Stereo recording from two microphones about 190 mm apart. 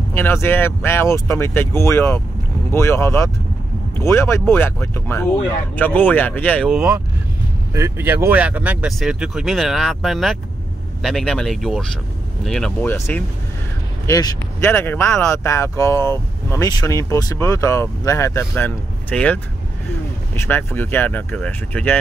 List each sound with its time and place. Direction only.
0.1 s speech: 15° left (ahead or behind); by 7.0 s 5° right (ahead or behind)
7.7 s speech: 15° right (ahead or behind); by 21.9 s 10° left (ahead or behind)